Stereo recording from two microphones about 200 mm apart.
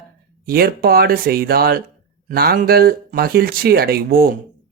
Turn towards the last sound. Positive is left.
turn(degrees=-45)  # may be behind; listen again after turning